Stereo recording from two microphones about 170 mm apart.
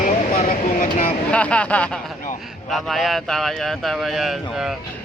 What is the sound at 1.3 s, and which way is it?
Speech, 5° left (ahead or behind).